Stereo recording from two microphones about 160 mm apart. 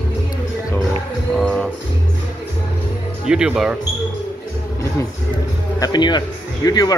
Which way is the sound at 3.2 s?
5° right (ahead or behind).